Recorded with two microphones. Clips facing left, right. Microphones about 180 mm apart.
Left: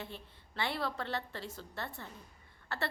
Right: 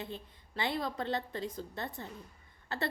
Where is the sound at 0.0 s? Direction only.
15° right (ahead or behind).